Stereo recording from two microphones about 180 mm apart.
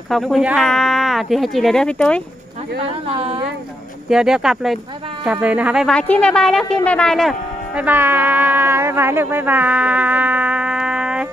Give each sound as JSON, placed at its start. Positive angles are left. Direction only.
{"t": 0.1, "sound": "speech", "side_deg": 0}
{"t": 3.1, "sound": "a woman's voice", "side_deg": -30}
{"t": 4.1, "sound": "speech", "side_deg": -5}